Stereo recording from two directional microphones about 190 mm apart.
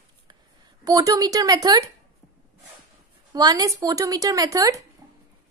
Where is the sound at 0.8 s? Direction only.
20° right (ahead or behind).